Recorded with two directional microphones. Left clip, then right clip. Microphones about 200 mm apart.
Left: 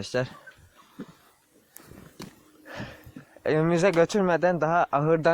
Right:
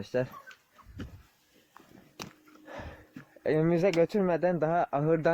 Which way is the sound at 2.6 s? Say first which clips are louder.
Left 4 dB; 15° right (ahead or behind).